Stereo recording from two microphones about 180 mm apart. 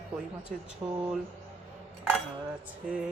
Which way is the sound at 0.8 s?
10° right (ahead or behind).